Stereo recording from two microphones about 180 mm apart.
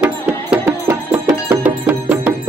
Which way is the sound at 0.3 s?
15° right (ahead or behind).